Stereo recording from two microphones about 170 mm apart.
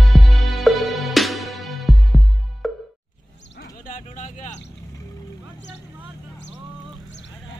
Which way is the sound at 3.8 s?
50° left (ahead or behind).